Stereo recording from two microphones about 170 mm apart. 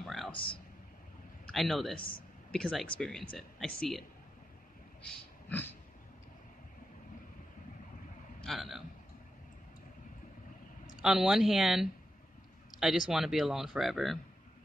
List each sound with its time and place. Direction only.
0.0 s a sound: centre (ahead or behind)
0.3 s speech: 30° left (ahead or behind)
1.4 s speech: centre (ahead or behind)
5.0 s speech: 10° left (ahead or behind)
8.5 s speech: centre (ahead or behind)
11.0 s speech: 5° right (ahead or behind)